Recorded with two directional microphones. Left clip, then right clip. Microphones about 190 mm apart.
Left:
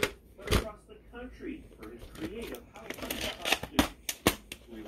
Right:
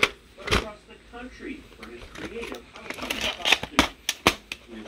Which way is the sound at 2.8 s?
10° right (ahead or behind).